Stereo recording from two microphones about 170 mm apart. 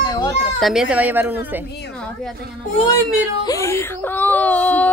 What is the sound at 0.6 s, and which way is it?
A man's voice, centre (ahead or behind).